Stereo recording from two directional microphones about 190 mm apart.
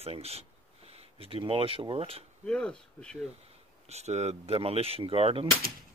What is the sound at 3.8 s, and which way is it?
Speech, 35° right (ahead or behind).